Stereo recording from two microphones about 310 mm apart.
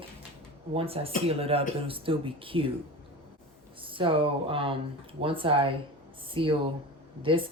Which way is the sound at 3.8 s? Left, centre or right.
Centre.